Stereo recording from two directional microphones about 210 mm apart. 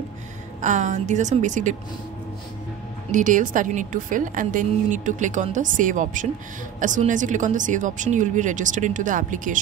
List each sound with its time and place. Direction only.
0.6 s a woman's voice: 35° right (ahead or behind)
3.1 s a woman's voice: 40° right (ahead or behind)